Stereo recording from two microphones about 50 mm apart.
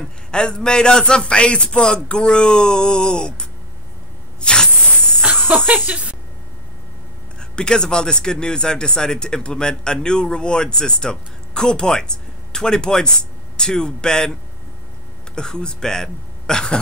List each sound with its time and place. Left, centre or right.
0.0 s speech: centre
4.4 s spray: centre
5.6 s speech: right
7.3 s speech: centre